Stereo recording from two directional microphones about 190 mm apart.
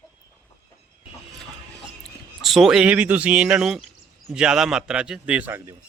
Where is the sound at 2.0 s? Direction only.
Centre (ahead or behind).